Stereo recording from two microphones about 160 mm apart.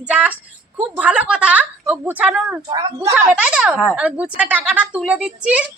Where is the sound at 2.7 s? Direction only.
20° right (ahead or behind).